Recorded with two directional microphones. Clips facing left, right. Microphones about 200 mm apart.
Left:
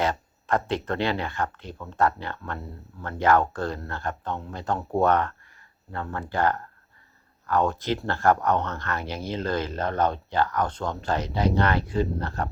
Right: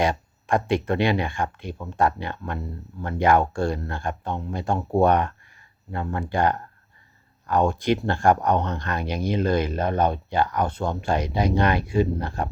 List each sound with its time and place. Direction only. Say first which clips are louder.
0.0 s speech: right 3 dB; 15° right (ahead or behind)